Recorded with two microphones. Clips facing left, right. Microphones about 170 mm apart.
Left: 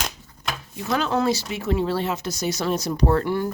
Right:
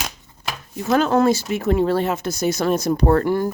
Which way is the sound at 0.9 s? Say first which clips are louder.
Right 6 dB; 50° right (ahead or behind).